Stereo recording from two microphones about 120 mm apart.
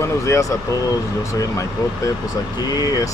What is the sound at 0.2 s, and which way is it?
Speech, 25° left (ahead or behind).